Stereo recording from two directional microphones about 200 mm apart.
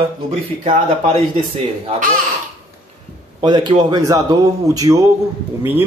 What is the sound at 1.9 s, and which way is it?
Speech, 40° right (ahead or behind).